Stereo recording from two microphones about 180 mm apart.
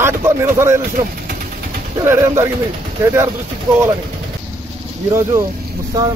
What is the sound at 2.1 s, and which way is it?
Speech, 15° right (ahead or behind).